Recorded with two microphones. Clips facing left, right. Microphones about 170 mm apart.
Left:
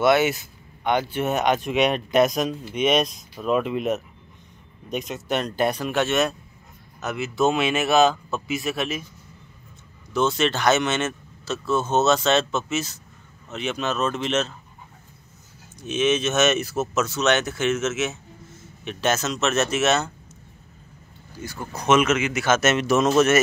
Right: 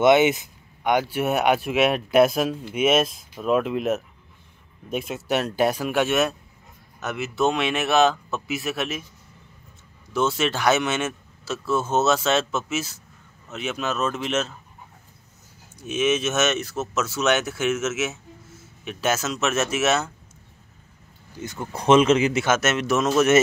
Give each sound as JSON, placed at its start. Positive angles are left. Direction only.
{"t": 0.0, "sound": "speech", "side_deg": -20}
{"t": 10.1, "sound": "speech", "side_deg": -5}
{"t": 15.8, "sound": "speech", "side_deg": -5}
{"t": 16.9, "sound": "speech", "side_deg": -5}
{"t": 21.4, "sound": "speech", "side_deg": -20}
{"t": 22.6, "sound": "speech", "side_deg": 0}